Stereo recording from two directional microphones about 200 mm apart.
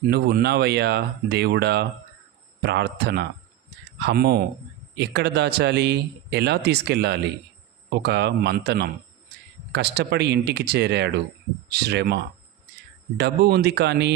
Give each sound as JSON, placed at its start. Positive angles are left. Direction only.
{"t": 0.1, "sound": "speech", "side_deg": -55}